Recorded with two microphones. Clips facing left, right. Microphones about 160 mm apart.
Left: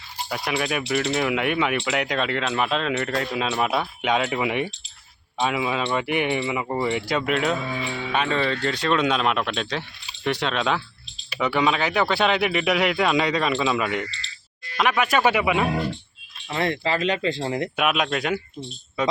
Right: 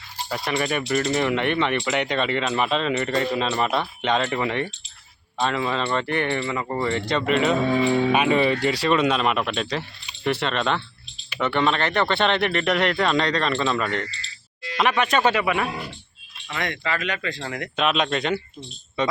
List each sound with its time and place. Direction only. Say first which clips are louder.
0.3 s speech: right 1 dB; centre (ahead or behind)
7.7 s speech: right 10 dB; 40° right (ahead or behind)
8.1 s speech: right 4 dB; 10° right (ahead or behind); by 15.6 s 15° left (ahead or behind)
16.5 s speech: left 4 dB; 30° left (ahead or behind)
17.7 s speech: right 4 dB; 5° left (ahead or behind)